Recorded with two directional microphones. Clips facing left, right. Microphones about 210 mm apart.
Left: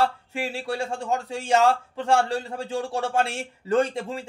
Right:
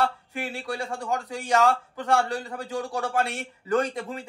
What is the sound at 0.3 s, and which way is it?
A man's voice, 30° left (ahead or behind).